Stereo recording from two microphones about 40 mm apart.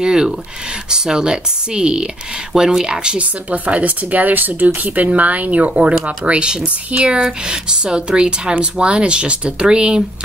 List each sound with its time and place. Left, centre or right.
0.0 s speech: centre
3.2 s speech: right